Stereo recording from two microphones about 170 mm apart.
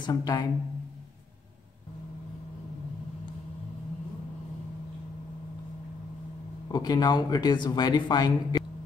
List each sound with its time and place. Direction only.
0.0 s speech: 25° left (ahead or behind)
6.7 s speech: 25° left (ahead or behind)